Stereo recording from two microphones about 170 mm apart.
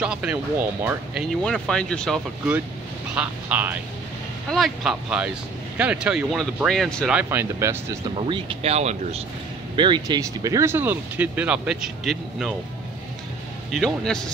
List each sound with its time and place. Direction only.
0.0 s speech: 5° right (ahead or behind)
1.4 s speech: 5° left (ahead or behind)
3.2 s speech: 10° right (ahead or behind)
7.2 s speech: 15° right (ahead or behind)
8.2 s speech: 30° right (ahead or behind)
9.8 s speech: 30° right (ahead or behind); by 12.5 s centre (ahead or behind)
13.7 s speech: centre (ahead or behind)